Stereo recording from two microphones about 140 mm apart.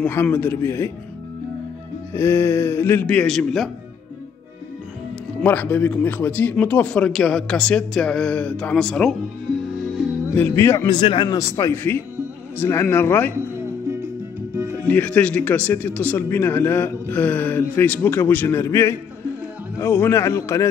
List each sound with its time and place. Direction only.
0.0 s speech: 15° left (ahead or behind)
2.1 s speech: 15° left (ahead or behind); by 3.7 s centre (ahead or behind)
5.4 s speech: 10° left (ahead or behind)
10.3 s speech: 15° left (ahead or behind)
10.9 s a man's voice: 35° left (ahead or behind); by 13.3 s 15° left (ahead or behind)
14.8 s a man's voice: 10° left (ahead or behind)